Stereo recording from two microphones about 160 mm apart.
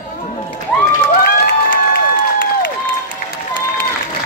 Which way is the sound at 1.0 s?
70° left (ahead or behind).